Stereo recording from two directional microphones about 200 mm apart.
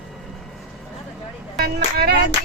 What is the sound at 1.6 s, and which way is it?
Music, 55° right (ahead or behind).